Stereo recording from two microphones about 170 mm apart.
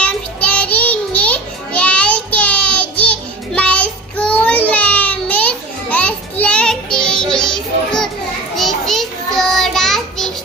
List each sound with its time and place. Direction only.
0.0 s child singing: 10° left (ahead or behind)